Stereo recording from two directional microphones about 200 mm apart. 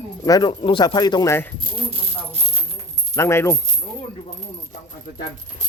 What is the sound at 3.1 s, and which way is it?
Speech, 15° left (ahead or behind).